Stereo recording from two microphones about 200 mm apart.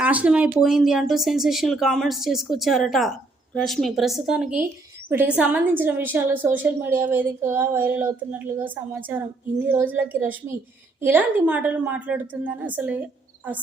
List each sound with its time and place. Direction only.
0.0 s a woman's voice: 5° right (ahead or behind)